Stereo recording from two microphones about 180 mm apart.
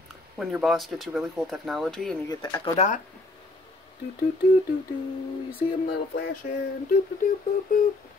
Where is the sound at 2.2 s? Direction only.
20° left (ahead or behind).